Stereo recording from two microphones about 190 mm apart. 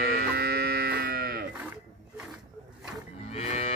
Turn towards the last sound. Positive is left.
turn(degrees=35)  # may be behind; listen again after turning